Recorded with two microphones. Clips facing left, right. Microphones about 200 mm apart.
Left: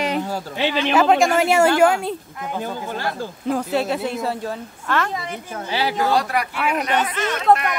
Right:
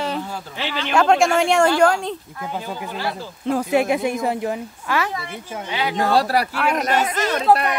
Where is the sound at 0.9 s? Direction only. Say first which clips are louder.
Right 1 dB; 5° left (ahead or behind).